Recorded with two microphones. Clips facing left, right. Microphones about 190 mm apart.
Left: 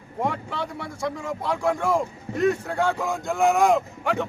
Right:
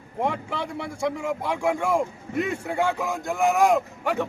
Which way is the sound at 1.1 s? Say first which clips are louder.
Right 1 dB; 10° right (ahead or behind).